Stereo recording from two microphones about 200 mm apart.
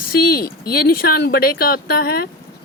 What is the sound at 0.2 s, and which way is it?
Speech, 50° left (ahead or behind).